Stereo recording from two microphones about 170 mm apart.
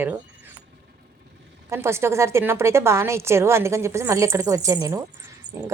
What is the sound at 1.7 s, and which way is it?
A woman's voice, 15° right (ahead or behind).